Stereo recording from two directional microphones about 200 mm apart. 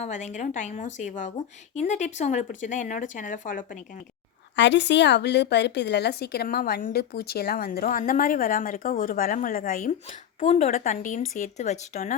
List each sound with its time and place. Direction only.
0.0 s speech: 35° left (ahead or behind)
4.5 s a woman's voice: 65° left (ahead or behind); by 12.1 s 35° left (ahead or behind)